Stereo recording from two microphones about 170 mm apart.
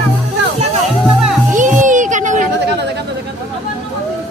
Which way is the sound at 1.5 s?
50° right (ahead or behind).